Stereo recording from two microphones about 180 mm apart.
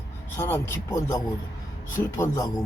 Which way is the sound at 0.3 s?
15° left (ahead or behind).